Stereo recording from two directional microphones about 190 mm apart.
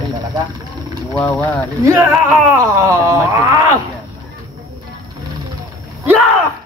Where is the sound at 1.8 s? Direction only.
10° right (ahead or behind).